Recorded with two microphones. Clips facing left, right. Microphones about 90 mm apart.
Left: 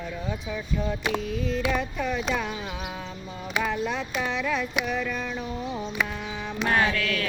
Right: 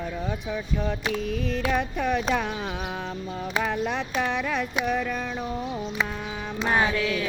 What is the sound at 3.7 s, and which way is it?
Speech, 55° right (ahead or behind).